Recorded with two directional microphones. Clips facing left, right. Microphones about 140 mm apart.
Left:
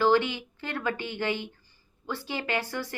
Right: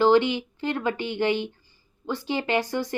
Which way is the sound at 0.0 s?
20° right (ahead or behind).